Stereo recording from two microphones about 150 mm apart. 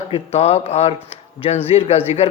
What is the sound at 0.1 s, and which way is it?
Speech, 45° left (ahead or behind).